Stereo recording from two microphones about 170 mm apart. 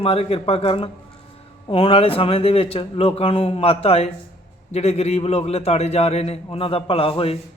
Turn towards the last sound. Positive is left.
turn(degrees=35)  # may be behind; listen again after turning